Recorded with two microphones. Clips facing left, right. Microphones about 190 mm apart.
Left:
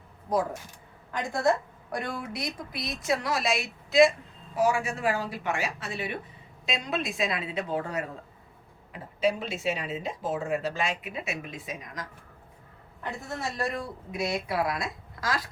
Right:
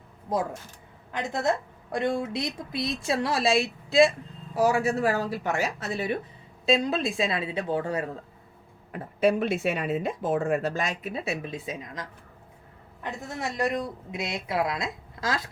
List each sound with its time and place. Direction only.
1.1 s a woman's voice: 20° right (ahead or behind)
8.9 s a woman's voice: 55° right (ahead or behind); by 15.4 s 25° right (ahead or behind)